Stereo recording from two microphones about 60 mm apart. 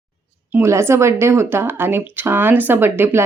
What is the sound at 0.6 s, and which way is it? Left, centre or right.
Speech, right.